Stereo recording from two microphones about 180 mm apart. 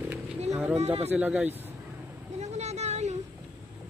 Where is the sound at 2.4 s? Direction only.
40° right (ahead or behind).